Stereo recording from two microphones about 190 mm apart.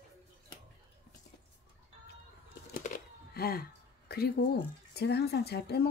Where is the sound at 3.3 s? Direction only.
55° left (ahead or behind).